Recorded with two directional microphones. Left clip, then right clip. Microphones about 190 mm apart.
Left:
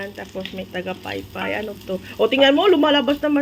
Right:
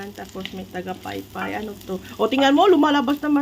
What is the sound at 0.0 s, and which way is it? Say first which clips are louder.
Speech: left 3 dB; 5° right (ahead or behind).